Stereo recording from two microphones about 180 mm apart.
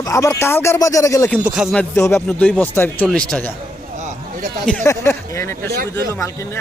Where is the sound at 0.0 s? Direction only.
15° left (ahead or behind).